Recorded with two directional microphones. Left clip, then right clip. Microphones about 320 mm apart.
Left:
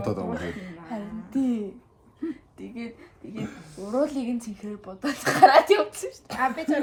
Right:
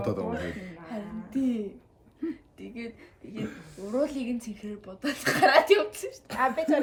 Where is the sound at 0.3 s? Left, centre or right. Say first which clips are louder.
Left 1 dB; centre.